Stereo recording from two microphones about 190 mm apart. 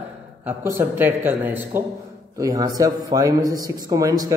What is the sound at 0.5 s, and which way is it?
Speech, 10° right (ahead or behind).